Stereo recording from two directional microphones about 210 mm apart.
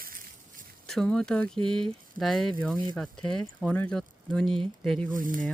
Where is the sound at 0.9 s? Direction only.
5° left (ahead or behind).